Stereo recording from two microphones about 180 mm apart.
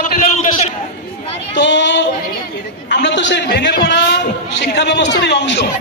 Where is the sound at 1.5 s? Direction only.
85° left.